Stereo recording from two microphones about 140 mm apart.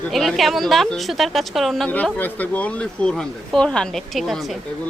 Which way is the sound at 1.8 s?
10° left (ahead or behind).